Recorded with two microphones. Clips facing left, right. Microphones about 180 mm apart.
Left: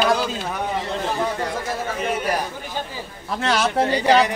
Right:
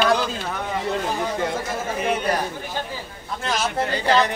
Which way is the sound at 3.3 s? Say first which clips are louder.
Left 4 dB; 70° left (ahead or behind).